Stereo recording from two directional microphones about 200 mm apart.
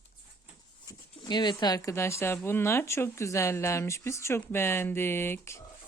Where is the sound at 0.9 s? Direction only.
20° left (ahead or behind).